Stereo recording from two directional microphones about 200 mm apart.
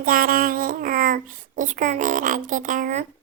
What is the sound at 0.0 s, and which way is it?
A woman's voice, 45° right (ahead or behind).